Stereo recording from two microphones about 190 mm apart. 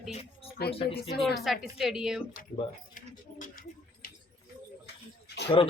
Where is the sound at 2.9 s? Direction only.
45° left (ahead or behind).